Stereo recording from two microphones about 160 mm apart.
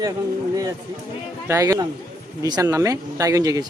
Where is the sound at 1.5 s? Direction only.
20° right (ahead or behind).